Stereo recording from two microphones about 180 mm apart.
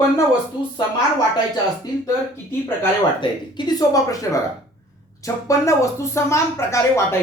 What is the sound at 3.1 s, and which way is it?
Speech, 25° left (ahead or behind).